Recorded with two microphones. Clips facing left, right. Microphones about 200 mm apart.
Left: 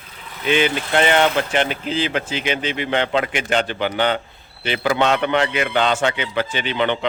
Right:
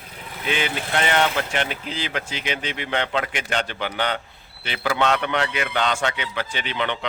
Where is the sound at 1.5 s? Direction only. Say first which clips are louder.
Left 6 dB; 30° left (ahead or behind).